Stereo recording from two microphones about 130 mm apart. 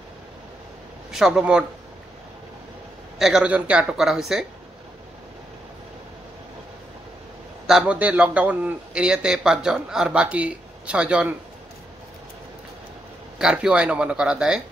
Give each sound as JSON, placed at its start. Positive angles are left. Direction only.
{"t": 1.1, "sound": "speech", "side_deg": -5}
{"t": 3.2, "sound": "speech", "side_deg": -5}
{"t": 7.6, "sound": "a man's voice", "side_deg": -5}
{"t": 13.4, "sound": "a man's voice", "side_deg": -10}